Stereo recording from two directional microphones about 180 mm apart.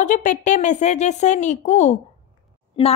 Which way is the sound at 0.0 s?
45° left (ahead or behind).